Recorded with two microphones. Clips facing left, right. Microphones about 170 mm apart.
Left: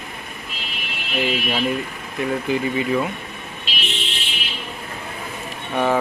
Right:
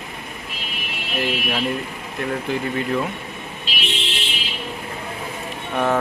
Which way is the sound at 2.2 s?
5° left (ahead or behind).